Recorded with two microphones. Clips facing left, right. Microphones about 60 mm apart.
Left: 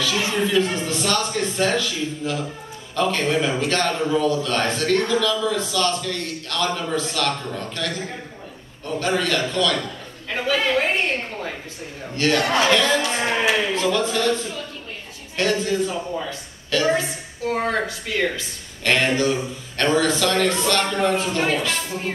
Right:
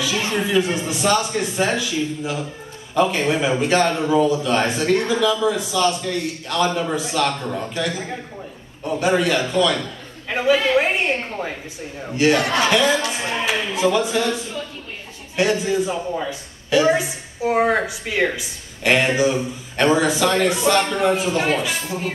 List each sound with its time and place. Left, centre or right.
0.5 s a woman's voice: centre